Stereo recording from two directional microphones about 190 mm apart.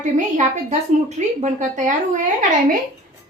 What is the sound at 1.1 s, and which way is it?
A woman's voice, 40° right (ahead or behind).